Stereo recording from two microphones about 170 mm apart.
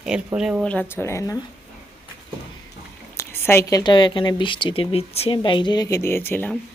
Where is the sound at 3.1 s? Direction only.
15° left (ahead or behind).